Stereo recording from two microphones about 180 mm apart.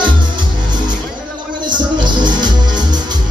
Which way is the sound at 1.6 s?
25° right (ahead or behind).